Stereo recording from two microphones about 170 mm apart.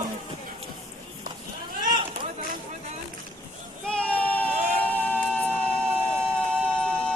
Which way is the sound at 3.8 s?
5° left (ahead or behind).